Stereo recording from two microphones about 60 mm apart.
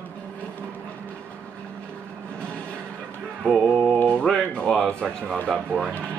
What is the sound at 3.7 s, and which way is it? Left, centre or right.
Male singing, centre.